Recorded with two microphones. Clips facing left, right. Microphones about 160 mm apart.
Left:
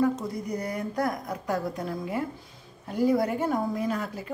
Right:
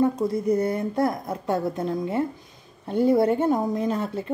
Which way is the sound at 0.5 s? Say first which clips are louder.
Right 8 dB; 25° right (ahead or behind).